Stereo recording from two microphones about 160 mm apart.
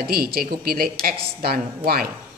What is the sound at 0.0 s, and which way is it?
A woman's voice, 70° right (ahead or behind).